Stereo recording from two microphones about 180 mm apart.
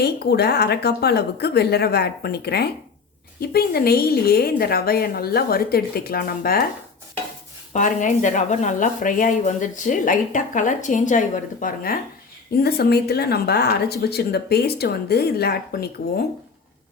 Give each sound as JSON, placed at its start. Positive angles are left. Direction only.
{"t": 0.0, "sound": "speech", "side_deg": 65}
{"t": 7.7, "sound": "speech", "side_deg": 45}
{"t": 11.6, "sound": "speech", "side_deg": 55}